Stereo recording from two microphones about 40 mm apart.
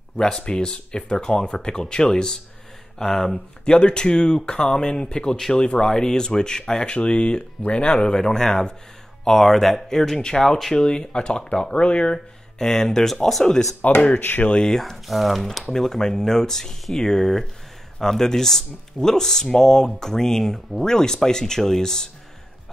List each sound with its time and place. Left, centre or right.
0.4 s speech: left
3.0 s speech: centre
3.6 s speech: left
12.5 s speech: centre
13.8 s speech: left
14.7 s speech: centre
15.6 s speech: centre